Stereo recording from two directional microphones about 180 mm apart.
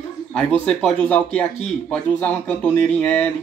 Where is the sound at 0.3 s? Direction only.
5° left (ahead or behind).